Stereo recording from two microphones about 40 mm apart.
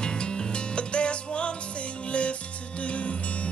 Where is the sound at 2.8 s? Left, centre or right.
Left.